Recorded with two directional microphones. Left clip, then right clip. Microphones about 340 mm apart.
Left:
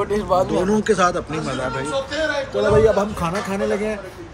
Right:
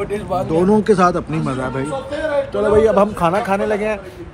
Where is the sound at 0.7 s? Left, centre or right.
Centre.